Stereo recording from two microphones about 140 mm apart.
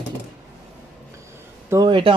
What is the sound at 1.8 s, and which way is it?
Speech, 35° right (ahead or behind).